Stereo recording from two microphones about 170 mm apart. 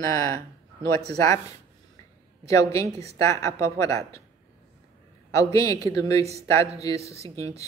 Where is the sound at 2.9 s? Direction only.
35° right (ahead or behind).